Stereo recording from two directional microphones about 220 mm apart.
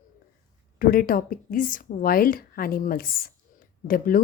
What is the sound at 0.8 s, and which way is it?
A woman's voice, 40° left (ahead or behind).